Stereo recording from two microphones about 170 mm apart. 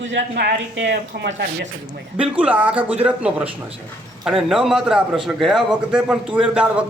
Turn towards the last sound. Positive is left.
turn(degrees=-5)  # may be behind; listen again after turning